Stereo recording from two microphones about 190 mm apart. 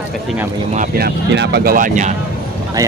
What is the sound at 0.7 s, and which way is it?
Speech, 50° right (ahead or behind).